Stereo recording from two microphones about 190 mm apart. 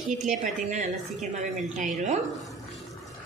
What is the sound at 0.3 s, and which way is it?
A woman's voice, 40° right (ahead or behind).